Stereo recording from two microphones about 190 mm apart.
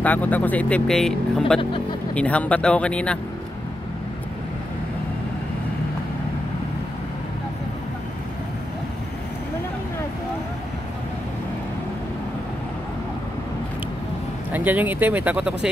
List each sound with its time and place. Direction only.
0.0 s speech: 10° left (ahead or behind)
14.5 s speech: 10° right (ahead or behind)